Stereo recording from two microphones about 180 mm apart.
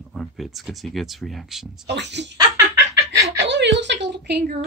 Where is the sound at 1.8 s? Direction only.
75° right (ahead or behind).